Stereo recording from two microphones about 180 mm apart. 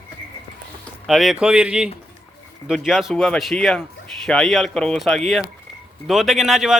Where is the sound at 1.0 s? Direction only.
Centre (ahead or behind).